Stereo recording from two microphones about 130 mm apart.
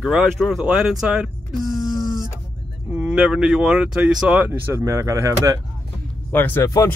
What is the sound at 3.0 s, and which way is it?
Speech, 10° right (ahead or behind).